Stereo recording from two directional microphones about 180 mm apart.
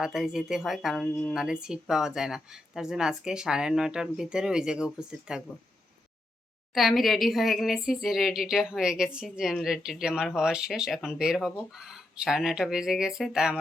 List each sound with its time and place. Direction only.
0.0 s a woman's voice: 5° right (ahead or behind)
6.7 s a woman's voice: centre (ahead or behind)